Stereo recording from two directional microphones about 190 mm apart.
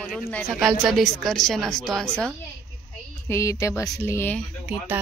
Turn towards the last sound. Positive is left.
turn(degrees=-10)  # may be behind; listen again after turning